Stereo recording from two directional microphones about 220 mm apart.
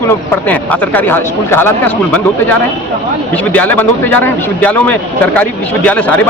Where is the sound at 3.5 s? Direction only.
5° left (ahead or behind).